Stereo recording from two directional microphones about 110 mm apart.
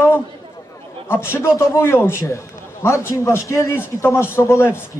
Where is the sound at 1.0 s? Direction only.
20° left (ahead or behind).